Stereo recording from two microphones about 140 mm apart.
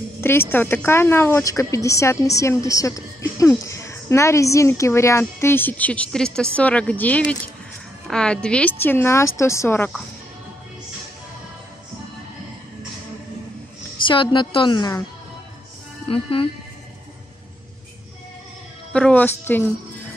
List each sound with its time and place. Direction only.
0.2 s a woman's voice: 15° left (ahead or behind)
14.0 s a woman's voice: 35° left (ahead or behind)
16.1 s a woman's voice: 40° left (ahead or behind)
18.9 s a woman's voice: 10° left (ahead or behind)